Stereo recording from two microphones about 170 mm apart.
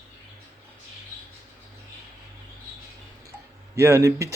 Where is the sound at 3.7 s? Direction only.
15° right (ahead or behind).